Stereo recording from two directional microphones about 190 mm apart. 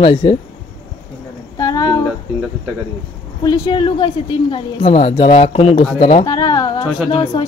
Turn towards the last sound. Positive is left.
turn(degrees=25)  # may be behind; listen again after turning